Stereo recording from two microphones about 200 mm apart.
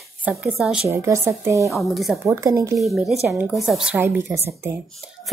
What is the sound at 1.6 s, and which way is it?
Speech, centre (ahead or behind).